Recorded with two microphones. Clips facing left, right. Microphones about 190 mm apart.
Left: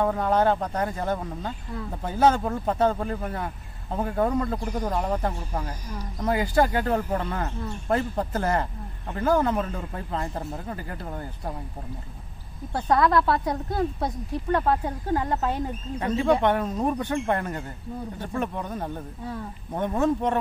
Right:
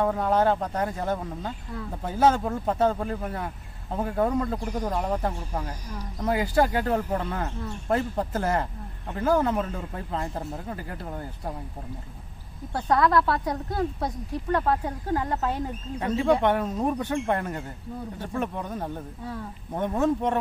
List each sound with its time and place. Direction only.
0.0 s speech: 5° right (ahead or behind)
12.7 s speech: 20° left (ahead or behind)
16.0 s speech: 5° right (ahead or behind)